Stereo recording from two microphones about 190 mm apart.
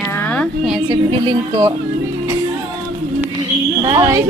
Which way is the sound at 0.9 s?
25° right (ahead or behind).